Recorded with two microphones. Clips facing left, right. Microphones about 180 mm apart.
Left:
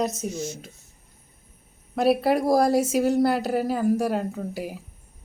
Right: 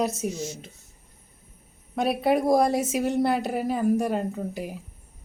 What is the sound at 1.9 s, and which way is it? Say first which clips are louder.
A woman's voice: left 2 dB; 5° left (ahead or behind).